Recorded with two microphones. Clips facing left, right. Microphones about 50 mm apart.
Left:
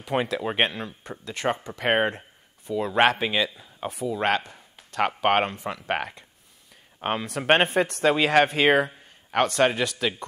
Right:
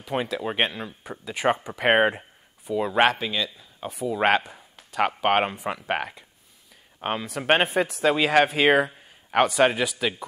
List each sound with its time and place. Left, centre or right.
0.0 s speech: centre
3.2 s a man's voice: centre
3.5 s speech: centre
4.2 s speech: centre
5.8 s speech: centre